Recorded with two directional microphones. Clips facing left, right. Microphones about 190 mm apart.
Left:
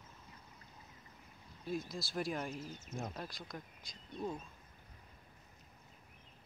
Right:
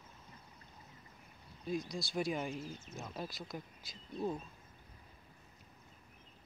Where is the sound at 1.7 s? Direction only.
Centre (ahead or behind).